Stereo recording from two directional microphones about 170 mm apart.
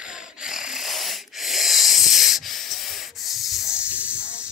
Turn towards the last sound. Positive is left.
turn(degrees=-5)  # may be behind; listen again after turning